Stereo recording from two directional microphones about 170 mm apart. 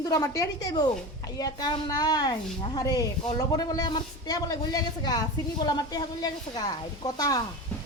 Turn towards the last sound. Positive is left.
turn(degrees=20)  # may be behind; listen again after turning